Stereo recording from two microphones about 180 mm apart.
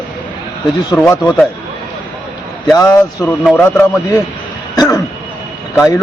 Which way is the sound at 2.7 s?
20° left (ahead or behind).